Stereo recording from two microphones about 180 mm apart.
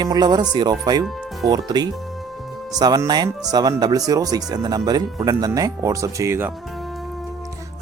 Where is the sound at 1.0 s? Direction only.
Centre (ahead or behind).